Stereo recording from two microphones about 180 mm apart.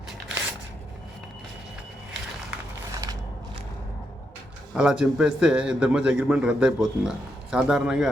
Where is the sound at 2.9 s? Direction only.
20° right (ahead or behind).